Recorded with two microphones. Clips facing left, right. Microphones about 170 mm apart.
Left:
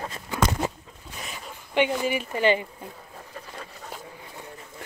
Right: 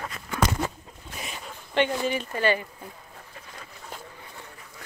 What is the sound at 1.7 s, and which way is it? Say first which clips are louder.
Speech: left 1 dB; 10° left (ahead or behind).